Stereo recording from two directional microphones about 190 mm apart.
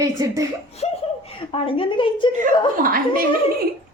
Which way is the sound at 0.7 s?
30° left (ahead or behind).